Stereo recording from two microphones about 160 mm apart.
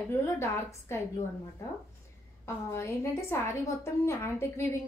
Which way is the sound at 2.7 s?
15° left (ahead or behind).